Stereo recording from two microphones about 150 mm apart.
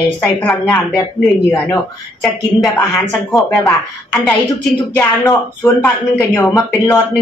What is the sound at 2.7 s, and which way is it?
Speech, 20° left (ahead or behind).